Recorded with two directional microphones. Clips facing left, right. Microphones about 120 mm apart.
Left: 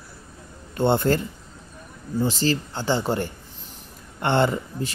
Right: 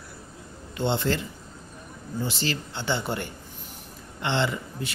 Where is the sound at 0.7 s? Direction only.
50° left (ahead or behind).